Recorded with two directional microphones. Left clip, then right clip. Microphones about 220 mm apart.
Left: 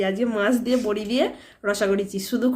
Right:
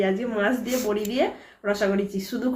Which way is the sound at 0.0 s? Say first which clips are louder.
Left 1 dB; 50° left (ahead or behind).